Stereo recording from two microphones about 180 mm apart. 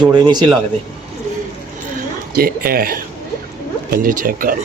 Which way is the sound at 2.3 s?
55° right (ahead or behind).